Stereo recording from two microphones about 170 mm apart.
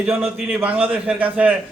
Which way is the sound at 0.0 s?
10° right (ahead or behind).